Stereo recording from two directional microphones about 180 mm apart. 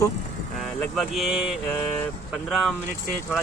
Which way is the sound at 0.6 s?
Centre (ahead or behind).